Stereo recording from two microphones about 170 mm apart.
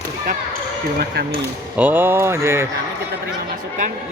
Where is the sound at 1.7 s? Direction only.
10° right (ahead or behind).